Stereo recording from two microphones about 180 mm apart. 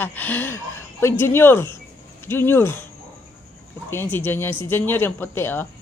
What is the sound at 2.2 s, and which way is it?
Speech, 10° left (ahead or behind).